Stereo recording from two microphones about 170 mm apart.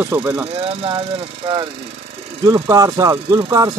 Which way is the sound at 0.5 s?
30° right (ahead or behind).